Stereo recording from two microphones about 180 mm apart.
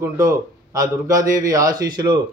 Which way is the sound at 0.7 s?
20° right (ahead or behind).